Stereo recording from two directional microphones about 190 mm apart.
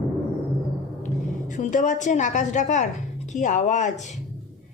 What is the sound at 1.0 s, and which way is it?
A woman's voice, 40° left (ahead or behind).